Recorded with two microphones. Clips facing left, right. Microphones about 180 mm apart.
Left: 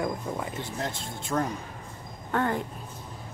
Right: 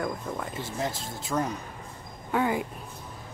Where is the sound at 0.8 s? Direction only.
5° right (ahead or behind).